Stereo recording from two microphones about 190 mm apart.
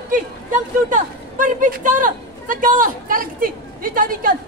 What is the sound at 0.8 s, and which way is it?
Speech, 45° right (ahead or behind).